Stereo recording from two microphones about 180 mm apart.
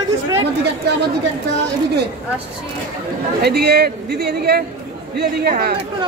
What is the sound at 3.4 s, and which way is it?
A man's voice, 65° right (ahead or behind).